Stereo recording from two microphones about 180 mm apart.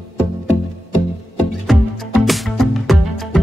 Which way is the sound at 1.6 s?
Centre (ahead or behind).